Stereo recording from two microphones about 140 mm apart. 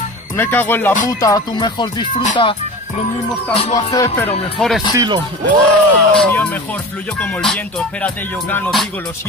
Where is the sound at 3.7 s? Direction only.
25° left (ahead or behind).